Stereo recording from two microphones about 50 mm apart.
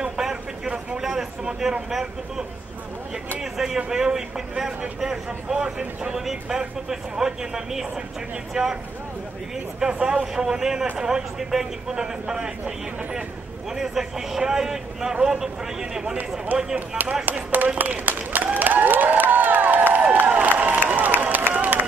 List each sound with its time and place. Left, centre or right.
0.0 s vehicle: centre
1.0 s speech: centre
3.5 s speech: centre
9.8 s speech: centre
16.5 s speech: right
17.7 s applause: right
19.3 s a sound: right
21.2 s run: right